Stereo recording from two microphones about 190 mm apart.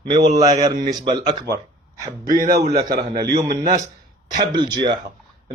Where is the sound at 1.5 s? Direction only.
15° right (ahead or behind).